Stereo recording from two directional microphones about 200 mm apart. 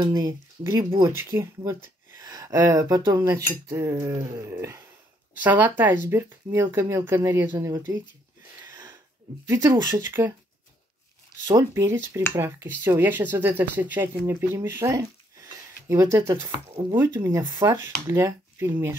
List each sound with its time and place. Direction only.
0.0 s speech: 20° right (ahead or behind)
9.5 s speech: 15° right (ahead or behind)
11.4 s speech: 15° right (ahead or behind)